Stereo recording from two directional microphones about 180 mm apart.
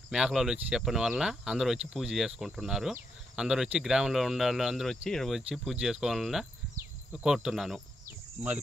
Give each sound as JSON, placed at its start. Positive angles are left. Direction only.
{"t": 0.1, "sound": "speech", "side_deg": -5}
{"t": 8.4, "sound": "speech", "side_deg": -40}